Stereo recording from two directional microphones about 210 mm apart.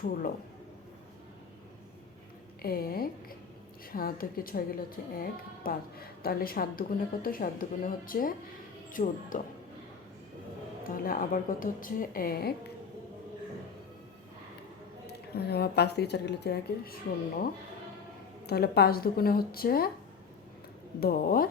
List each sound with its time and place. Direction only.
0.0 s a woman's voice: 40° left (ahead or behind)
2.6 s a woman's voice: 45° left (ahead or behind)
10.8 s a woman's voice: 40° left (ahead or behind)
15.0 s a woman's voice: 50° left (ahead or behind)
18.4 s a woman's voice: 50° left (ahead or behind)
21.0 s a woman's voice: 45° left (ahead or behind)